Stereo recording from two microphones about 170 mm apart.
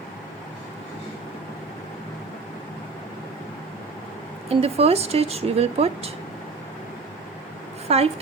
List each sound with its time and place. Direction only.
4.4 s speech: 35° right (ahead or behind)
7.9 s speech: 35° right (ahead or behind)